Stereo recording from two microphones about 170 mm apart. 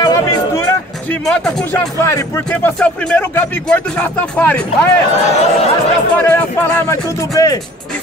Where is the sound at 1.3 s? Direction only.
5° left (ahead or behind).